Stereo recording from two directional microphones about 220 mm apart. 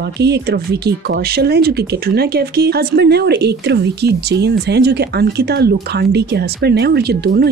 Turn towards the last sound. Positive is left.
turn(degrees=-45)  # may be behind; listen again after turning